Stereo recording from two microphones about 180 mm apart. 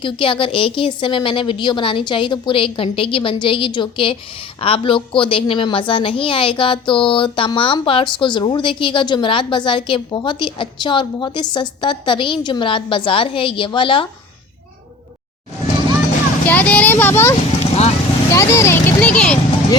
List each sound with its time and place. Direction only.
0.0 s a woman's voice: 30° left (ahead or behind)
16.5 s speech: 10° left (ahead or behind)
17.6 s vehicle: 35° left (ahead or behind)
18.3 s speech: 15° left (ahead or behind)